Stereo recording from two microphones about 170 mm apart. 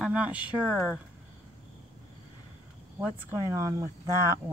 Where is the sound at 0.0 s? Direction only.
5° right (ahead or behind).